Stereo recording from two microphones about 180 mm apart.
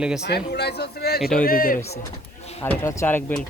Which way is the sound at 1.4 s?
55° left (ahead or behind).